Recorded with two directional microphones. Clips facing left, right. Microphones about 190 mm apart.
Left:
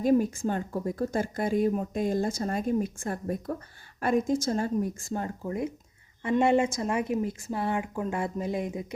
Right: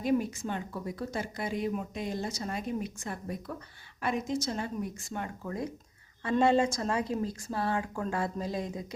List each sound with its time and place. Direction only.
0.0 s speech: 45° left (ahead or behind); by 8.9 s 20° left (ahead or behind)